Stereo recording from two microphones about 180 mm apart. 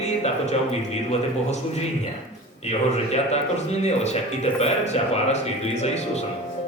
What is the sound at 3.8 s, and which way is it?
Speech, 35° left (ahead or behind).